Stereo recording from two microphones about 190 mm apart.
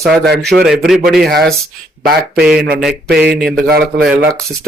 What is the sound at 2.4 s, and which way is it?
Speech, 5° right (ahead or behind).